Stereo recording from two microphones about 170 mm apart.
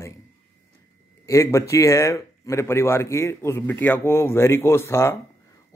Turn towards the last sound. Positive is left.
turn(degrees=15)  # may be behind; listen again after turning